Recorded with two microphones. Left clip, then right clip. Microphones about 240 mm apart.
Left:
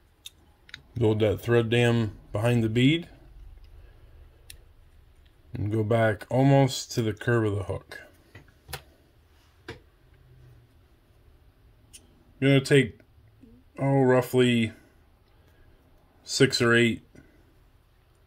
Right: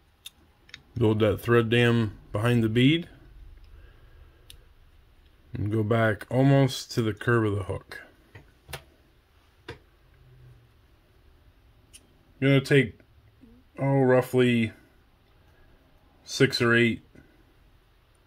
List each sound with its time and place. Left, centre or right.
0.9 s speech: centre
5.5 s speech: centre
11.9 s a sound: centre
13.7 s speech: centre
16.3 s speech: centre